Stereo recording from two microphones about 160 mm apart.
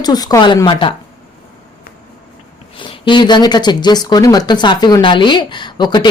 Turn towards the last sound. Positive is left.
turn(degrees=30)  # may be behind; listen again after turning